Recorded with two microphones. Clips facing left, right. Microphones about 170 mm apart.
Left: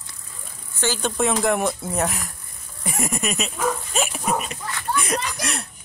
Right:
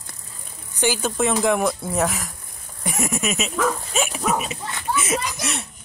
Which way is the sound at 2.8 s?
Centre (ahead or behind).